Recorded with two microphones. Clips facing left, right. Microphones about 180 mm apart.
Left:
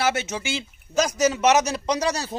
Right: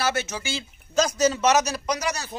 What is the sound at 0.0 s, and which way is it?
A man's voice, 25° left (ahead or behind).